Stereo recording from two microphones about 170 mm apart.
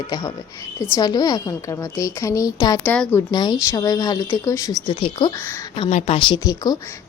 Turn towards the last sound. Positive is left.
turn(degrees=20)  # may be behind; listen again after turning